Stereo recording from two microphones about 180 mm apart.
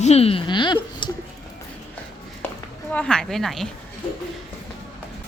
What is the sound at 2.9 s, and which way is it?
Speech, 5° left (ahead or behind).